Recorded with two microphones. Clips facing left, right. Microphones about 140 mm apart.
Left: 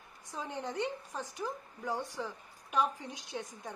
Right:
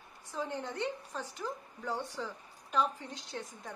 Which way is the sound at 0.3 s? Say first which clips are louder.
Right 1 dB; 15° left (ahead or behind).